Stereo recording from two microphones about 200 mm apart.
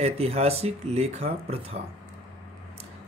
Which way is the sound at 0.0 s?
30° right (ahead or behind).